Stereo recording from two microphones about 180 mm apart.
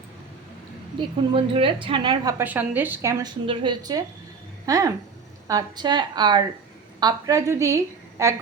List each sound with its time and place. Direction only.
1.2 s a woman's voice: 25° right (ahead or behind)
2.4 s a woman's voice: 10° right (ahead or behind)
3.4 s a woman's voice: 30° right (ahead or behind)